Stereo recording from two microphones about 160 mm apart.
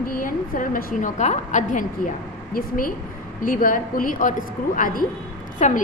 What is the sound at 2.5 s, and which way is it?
A woman's voice, 60° left (ahead or behind).